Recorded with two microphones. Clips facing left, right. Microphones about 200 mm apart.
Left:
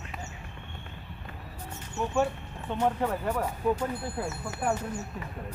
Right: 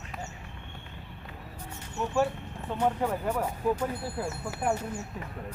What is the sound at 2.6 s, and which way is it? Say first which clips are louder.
Speech: even; 5° right (ahead or behind).